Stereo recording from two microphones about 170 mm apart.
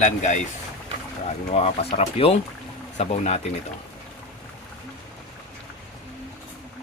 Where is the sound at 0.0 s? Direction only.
45° left (ahead or behind).